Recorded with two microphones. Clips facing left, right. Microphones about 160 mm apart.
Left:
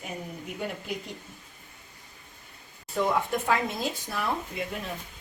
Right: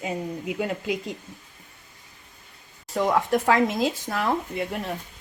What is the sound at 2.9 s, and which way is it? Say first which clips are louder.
A woman's voice: right 4 dB; 85° right.